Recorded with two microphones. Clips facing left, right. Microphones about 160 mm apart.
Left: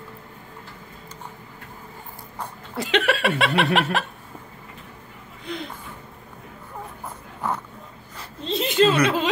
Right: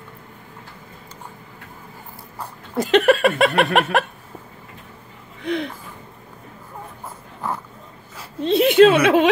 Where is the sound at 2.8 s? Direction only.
45° right (ahead or behind).